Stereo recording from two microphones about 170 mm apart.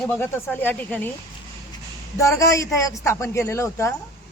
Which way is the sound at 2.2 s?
20° left (ahead or behind).